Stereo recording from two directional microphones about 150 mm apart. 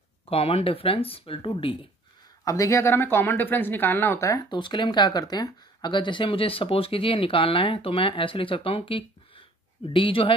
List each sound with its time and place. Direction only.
0.3 s speech: 40° left (ahead or behind)
2.4 s speech: 20° left (ahead or behind)